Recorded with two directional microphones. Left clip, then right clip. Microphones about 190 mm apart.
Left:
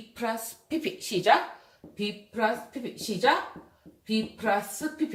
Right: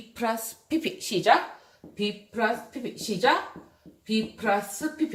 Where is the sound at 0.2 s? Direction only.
25° right (ahead or behind).